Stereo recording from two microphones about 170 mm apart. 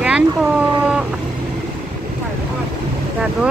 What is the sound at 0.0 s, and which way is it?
Cat, 5° right (ahead or behind).